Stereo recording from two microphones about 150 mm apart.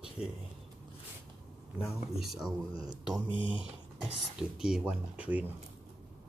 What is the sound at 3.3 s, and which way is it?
Speech, 35° left (ahead or behind).